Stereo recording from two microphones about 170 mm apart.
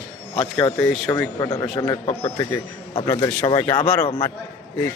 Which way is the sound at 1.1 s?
20° left (ahead or behind).